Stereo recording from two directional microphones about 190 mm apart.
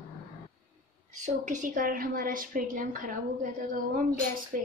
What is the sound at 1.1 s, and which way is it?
A woman's voice, 40° right (ahead or behind).